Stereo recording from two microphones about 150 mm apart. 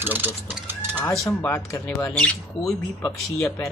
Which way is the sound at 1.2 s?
20° left (ahead or behind).